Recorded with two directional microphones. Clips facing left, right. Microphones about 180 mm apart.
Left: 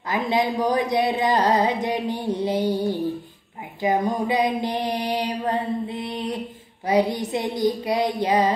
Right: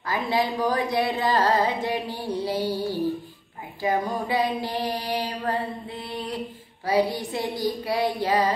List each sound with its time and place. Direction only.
0.1 s speech: 20° left (ahead or behind)